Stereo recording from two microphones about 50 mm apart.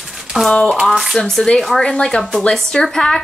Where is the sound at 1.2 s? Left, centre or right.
Centre.